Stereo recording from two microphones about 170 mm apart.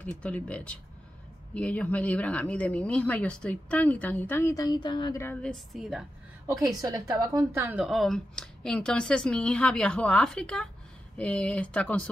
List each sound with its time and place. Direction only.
0.0 s speech: 10° left (ahead or behind); by 5.2 s 25° left (ahead or behind)
5.2 s speech: 5° left (ahead or behind)
6.8 s a woman's voice: 20° right (ahead or behind)
7.8 s speech: centre (ahead or behind)